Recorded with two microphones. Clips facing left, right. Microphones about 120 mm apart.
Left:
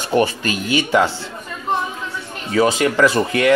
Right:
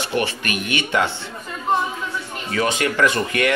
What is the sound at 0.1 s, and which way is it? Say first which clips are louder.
Speech: left 8 dB; 35° left (ahead or behind).